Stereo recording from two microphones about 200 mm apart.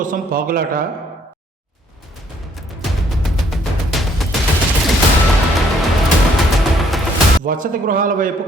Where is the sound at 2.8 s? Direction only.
Centre (ahead or behind).